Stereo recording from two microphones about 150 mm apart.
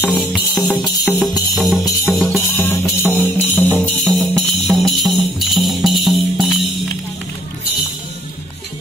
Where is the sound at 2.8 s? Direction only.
10° right (ahead or behind).